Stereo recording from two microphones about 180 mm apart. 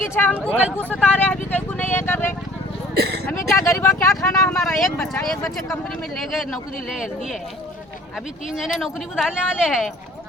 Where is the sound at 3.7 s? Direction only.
15° left (ahead or behind); by 7.1 s centre (ahead or behind).